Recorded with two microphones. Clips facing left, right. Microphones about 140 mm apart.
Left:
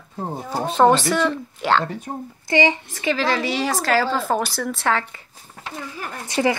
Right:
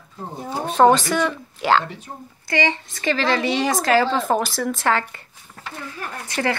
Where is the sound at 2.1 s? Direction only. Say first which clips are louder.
Left 7 dB; 45° left (ahead or behind).